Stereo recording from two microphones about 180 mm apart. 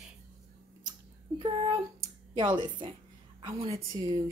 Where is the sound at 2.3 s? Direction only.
25° right (ahead or behind).